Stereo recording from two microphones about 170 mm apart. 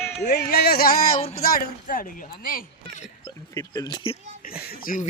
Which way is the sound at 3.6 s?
25° left (ahead or behind).